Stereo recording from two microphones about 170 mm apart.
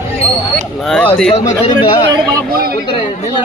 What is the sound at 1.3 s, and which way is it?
Speech, 35° left (ahead or behind).